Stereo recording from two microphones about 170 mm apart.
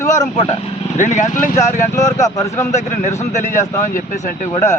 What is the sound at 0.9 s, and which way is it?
Speech, 45° left (ahead or behind).